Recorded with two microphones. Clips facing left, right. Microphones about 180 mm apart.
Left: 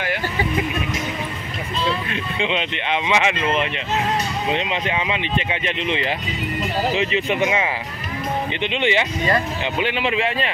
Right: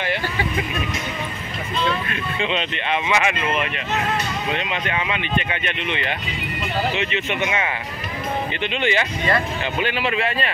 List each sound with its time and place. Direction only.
2.3 s speech: 15° left (ahead or behind); by 7.4 s 35° left (ahead or behind)
7.4 s speech: 20° left (ahead or behind)